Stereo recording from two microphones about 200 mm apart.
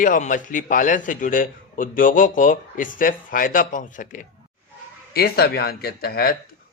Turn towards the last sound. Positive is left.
turn(degrees=50)  # may be behind; listen again after turning